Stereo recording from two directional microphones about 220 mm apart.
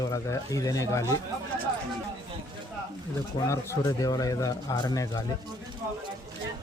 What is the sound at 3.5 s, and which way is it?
Speech, 15° left (ahead or behind).